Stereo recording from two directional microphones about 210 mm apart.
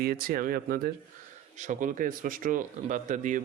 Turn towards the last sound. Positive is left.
turn(degrees=-35)  # may be behind; listen again after turning